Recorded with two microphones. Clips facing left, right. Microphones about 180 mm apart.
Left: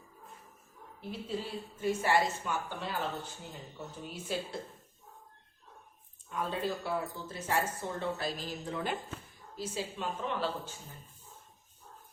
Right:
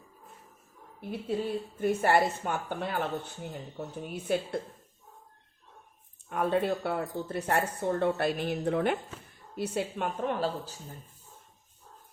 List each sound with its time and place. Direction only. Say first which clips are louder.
1.1 s a woman's voice: right 7 dB; 55° right (ahead or behind)
6.2 s a woman's voice: right 7 dB; 60° right (ahead or behind); by 10.8 s 45° right (ahead or behind)